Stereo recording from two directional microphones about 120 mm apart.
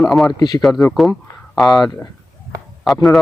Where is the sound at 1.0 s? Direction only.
Centre (ahead or behind).